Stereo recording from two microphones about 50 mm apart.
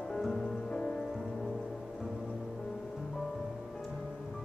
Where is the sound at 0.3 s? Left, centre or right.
Centre.